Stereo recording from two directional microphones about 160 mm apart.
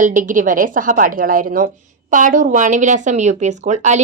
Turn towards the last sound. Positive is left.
turn(degrees=-50)  # may be behind; listen again after turning